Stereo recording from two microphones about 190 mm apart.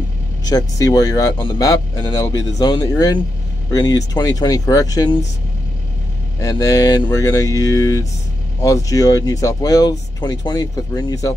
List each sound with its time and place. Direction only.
0.5 s speech: 20° left (ahead or behind)
6.4 s speech: 15° left (ahead or behind)